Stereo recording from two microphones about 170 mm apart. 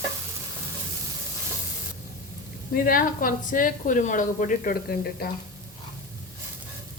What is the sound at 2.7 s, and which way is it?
A woman's voice, 55° left (ahead or behind).